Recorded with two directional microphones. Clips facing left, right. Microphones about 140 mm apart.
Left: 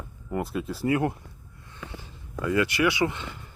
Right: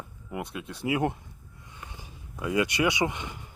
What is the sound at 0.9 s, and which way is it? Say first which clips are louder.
Speech: left 2 dB; 15° right (ahead or behind).